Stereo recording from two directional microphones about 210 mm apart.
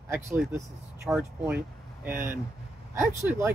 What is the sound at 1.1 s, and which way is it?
Speech, centre (ahead or behind).